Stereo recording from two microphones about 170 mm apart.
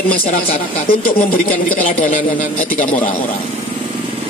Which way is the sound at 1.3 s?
55° left (ahead or behind).